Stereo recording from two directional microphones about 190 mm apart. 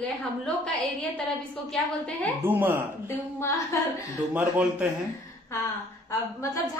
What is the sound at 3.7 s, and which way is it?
Speech, 15° left (ahead or behind).